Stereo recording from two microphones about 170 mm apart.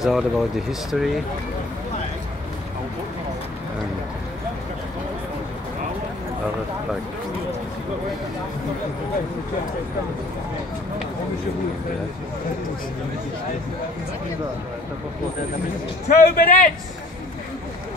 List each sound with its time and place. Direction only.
0.0 s speech: centre (ahead or behind)
16.1 s a man's voice: 60° left (ahead or behind)